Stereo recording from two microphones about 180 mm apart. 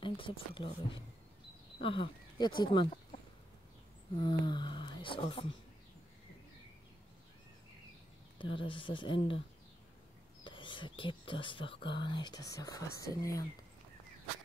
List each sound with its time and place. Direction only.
0.0 s speech: 30° left (ahead or behind)
4.2 s speech: 25° left (ahead or behind)
8.4 s speech: 30° left (ahead or behind)
10.4 s speech: 25° left (ahead or behind)